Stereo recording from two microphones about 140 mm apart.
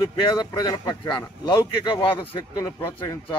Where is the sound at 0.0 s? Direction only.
35° left (ahead or behind).